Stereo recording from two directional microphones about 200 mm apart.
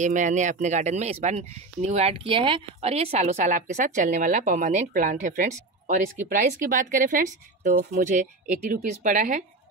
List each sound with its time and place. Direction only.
0.0 s speech: 40° right (ahead or behind)